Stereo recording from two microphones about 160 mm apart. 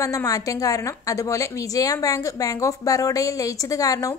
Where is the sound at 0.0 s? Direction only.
20° left (ahead or behind).